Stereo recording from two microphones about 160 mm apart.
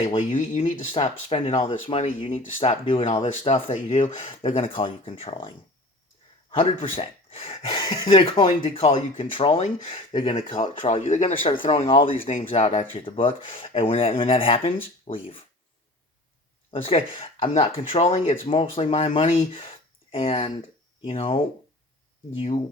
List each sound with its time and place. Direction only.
0.3 s speech: 50° left (ahead or behind); by 10.7 s 30° left (ahead or behind)
10.8 s speech: 50° left (ahead or behind)
11.4 s speech: 30° left (ahead or behind); by 12.9 s 50° left (ahead or behind)
12.9 s speech: 35° left (ahead or behind)
16.7 s speech: 35° left (ahead or behind)